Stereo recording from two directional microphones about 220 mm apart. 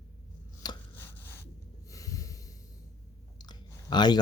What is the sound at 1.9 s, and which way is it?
Snort, 15° left (ahead or behind).